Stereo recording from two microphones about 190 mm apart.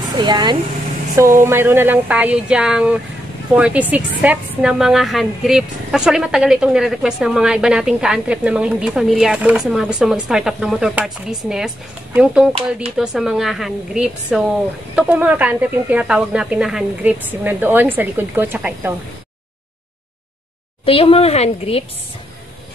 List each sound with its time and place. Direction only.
0.2 s a woman's voice: 20° right (ahead or behind)
20.8 s a woman's voice: 30° left (ahead or behind)